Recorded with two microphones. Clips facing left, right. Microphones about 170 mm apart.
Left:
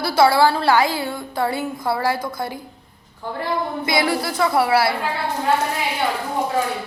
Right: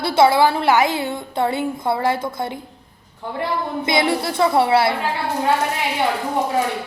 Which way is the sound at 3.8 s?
25° right (ahead or behind).